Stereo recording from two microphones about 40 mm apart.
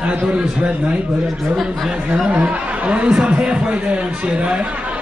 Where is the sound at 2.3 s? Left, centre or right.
Right.